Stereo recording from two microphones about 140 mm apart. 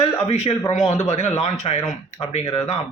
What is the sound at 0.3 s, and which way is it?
A man's voice, 50° left (ahead or behind).